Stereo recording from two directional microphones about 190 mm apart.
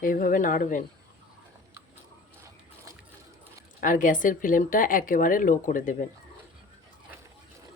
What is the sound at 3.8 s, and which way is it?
Speech, 45° left (ahead or behind).